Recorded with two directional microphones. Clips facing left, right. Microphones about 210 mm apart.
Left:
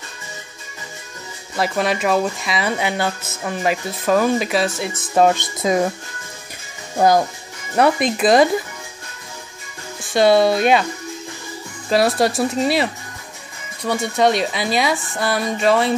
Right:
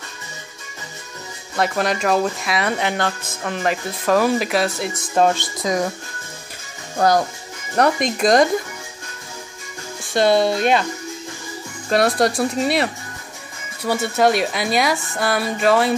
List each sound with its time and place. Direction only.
1.6 s speech: centre (ahead or behind)
5.3 s speech: 20° left (ahead or behind)
7.7 s speech: 5° left (ahead or behind)
10.1 s speech: 5° left (ahead or behind)
11.9 s speech: centre (ahead or behind)
13.8 s speech: 5° right (ahead or behind)